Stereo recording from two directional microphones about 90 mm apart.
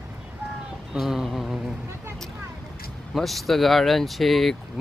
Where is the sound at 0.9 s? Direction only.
5° right (ahead or behind).